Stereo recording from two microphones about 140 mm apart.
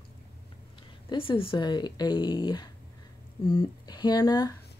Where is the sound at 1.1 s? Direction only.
40° left (ahead or behind).